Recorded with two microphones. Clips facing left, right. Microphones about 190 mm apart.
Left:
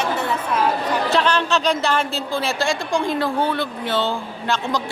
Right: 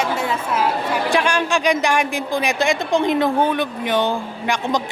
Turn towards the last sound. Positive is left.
turn(degrees=-15)  # may be behind; listen again after turning